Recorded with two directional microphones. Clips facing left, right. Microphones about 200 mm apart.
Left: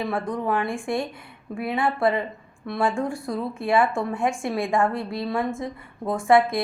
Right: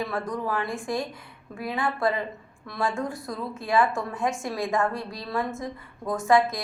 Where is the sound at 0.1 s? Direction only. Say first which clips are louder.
Left 4 dB; 25° left (ahead or behind).